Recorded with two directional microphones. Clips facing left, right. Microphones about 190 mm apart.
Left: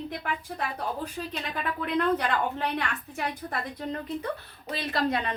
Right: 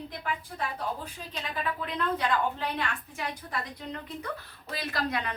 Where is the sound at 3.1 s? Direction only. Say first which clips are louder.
Left 5 dB; 40° left (ahead or behind).